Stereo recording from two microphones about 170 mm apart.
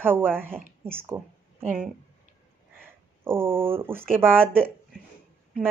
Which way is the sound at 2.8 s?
15° right (ahead or behind).